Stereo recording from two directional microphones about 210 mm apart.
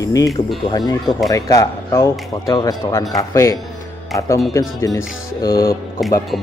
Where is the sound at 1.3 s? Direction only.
15° left (ahead or behind).